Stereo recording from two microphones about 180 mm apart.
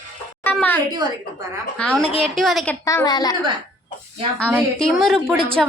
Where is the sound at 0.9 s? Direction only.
20° right (ahead or behind).